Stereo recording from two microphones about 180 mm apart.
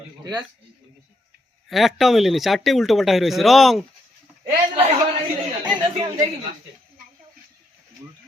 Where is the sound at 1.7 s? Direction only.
Centre (ahead or behind).